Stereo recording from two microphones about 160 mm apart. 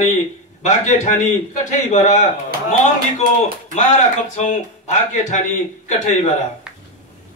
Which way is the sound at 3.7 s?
45° left (ahead or behind).